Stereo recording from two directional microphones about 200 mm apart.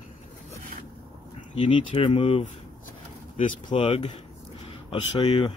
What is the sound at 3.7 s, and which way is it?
Speech, 25° left (ahead or behind).